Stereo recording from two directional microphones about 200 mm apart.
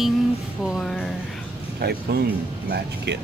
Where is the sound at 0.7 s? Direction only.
Centre (ahead or behind).